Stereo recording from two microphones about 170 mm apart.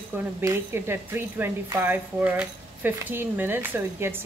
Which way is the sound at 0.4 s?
15° right (ahead or behind).